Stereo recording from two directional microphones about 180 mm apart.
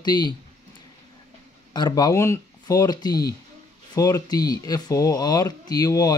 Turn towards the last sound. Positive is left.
turn(degrees=20)  # may be behind; listen again after turning